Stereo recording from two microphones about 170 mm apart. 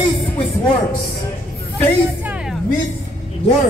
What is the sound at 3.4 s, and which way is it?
Speech, 35° left (ahead or behind).